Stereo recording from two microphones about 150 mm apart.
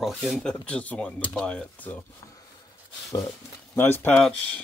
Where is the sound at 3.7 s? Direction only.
15° left (ahead or behind).